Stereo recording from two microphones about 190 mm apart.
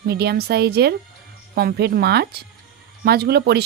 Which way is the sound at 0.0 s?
55° right (ahead or behind).